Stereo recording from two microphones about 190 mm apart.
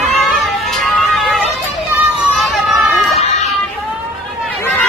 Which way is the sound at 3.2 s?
35° left (ahead or behind).